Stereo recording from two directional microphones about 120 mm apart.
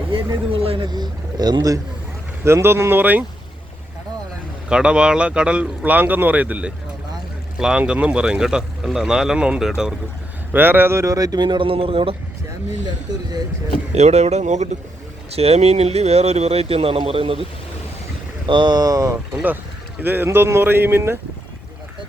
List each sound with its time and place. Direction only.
0.1 s a sound: 45° right (ahead or behind)
0.9 s speech: 35° right (ahead or behind)
2.4 s speech: 20° right (ahead or behind)
4.7 s speech: 10° right (ahead or behind)
10.5 s speech: 15° right (ahead or behind); by 12.1 s 50° right (ahead or behind)
13.9 s speech: 70° right (ahead or behind)
15.3 s speech: 60° right (ahead or behind)
18.4 s speech: 40° right (ahead or behind)
20.0 s speech: 15° right (ahead or behind)